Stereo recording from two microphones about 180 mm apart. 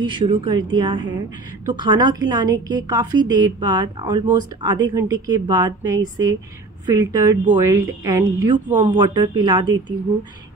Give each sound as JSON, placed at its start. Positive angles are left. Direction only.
{"t": 0.0, "sound": "a woman's voice", "side_deg": -25}